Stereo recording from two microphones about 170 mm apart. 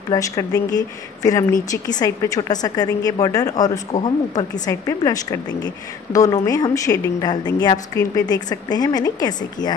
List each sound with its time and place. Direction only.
0.1 s speech: 20° left (ahead or behind)